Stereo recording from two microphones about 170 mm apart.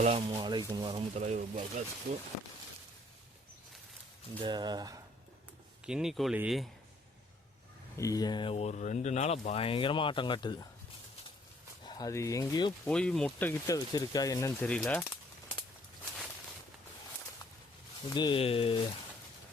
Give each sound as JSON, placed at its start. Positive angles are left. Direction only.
{"t": 0.0, "sound": "speech", "side_deg": -35}
{"t": 1.1, "sound": "speech", "side_deg": -40}
{"t": 2.1, "sound": "speech", "side_deg": -70}
{"t": 4.4, "sound": "speech", "side_deg": -25}
{"t": 5.8, "sound": "speech", "side_deg": -5}
{"t": 7.9, "sound": "speech", "side_deg": 20}
{"t": 11.9, "sound": "speech", "side_deg": 20}
{"t": 12.8, "sound": "speech", "side_deg": 5}
{"t": 14.7, "sound": "speech", "side_deg": 5}
{"t": 18.1, "sound": "speech", "side_deg": 25}